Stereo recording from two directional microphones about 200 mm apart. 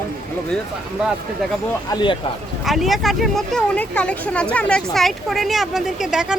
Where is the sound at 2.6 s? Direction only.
Centre (ahead or behind).